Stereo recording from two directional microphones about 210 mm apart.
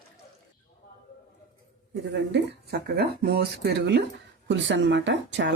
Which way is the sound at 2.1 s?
55° right (ahead or behind).